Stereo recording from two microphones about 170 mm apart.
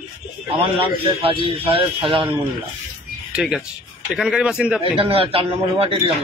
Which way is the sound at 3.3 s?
Centre (ahead or behind).